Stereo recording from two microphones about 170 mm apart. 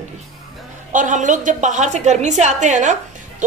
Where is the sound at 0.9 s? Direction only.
50° right (ahead or behind).